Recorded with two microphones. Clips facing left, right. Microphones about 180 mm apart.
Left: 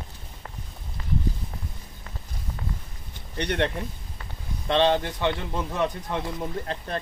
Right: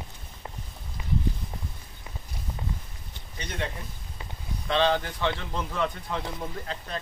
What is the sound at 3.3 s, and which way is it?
Speech, 70° left (ahead or behind).